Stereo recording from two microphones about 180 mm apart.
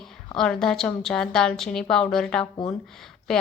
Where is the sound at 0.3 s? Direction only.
5° left (ahead or behind).